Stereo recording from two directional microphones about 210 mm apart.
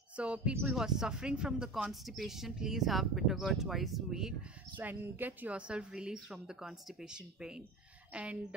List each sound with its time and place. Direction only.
0.1 s speech: 5° right (ahead or behind)